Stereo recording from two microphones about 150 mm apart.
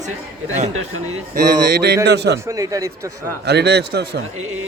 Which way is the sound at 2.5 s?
20° right (ahead or behind).